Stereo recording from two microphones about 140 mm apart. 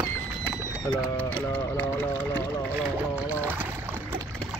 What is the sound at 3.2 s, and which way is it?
Trickle, 15° right (ahead or behind).